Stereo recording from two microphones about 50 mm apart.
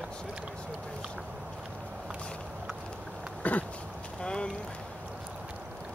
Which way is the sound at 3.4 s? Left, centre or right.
Left.